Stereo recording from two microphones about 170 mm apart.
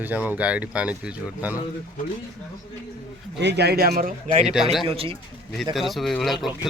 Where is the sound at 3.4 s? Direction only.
85° right; by 4.4 s 60° right (ahead or behind).